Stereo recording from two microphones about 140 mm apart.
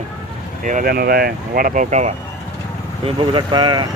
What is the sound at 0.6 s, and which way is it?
Speech, 80° right.